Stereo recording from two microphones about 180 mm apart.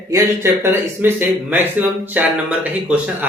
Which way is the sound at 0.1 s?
20° right (ahead or behind).